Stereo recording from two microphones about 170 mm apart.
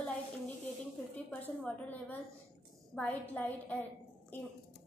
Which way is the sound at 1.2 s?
10° left (ahead or behind).